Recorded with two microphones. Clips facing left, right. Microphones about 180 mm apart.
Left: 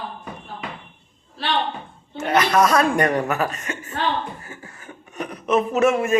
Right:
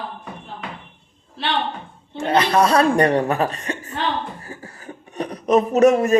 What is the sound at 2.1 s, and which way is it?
A man's voice, 30° right (ahead or behind).